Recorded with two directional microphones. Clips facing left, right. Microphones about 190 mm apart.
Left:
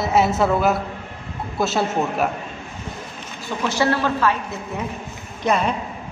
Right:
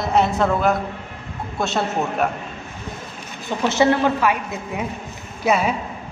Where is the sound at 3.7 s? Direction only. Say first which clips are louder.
Right 3 dB; 20° right (ahead or behind).